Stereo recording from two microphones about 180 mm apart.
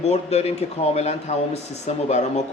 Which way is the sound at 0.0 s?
35° left (ahead or behind).